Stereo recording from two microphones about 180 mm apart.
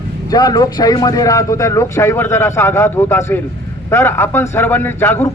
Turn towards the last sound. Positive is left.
turn(degrees=15)  # may be behind; listen again after turning